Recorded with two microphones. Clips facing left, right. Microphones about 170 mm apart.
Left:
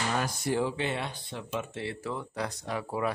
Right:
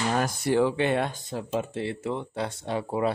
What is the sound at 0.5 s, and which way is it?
Speech, 65° right (ahead or behind).